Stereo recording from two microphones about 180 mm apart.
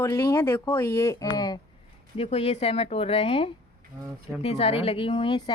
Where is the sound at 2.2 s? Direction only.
35° left (ahead or behind).